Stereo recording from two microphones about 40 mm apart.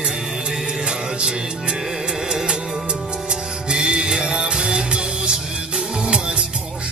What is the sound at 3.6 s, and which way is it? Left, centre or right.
Music, right.